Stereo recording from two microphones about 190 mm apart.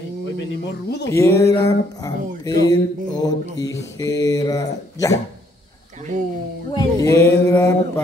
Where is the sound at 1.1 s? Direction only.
15° left (ahead or behind).